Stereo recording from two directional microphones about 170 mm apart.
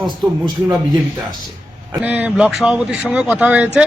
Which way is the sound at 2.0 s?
10° right (ahead or behind).